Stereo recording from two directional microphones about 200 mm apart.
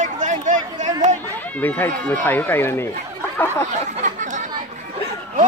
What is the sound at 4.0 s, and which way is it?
Chatter, 40° right (ahead or behind).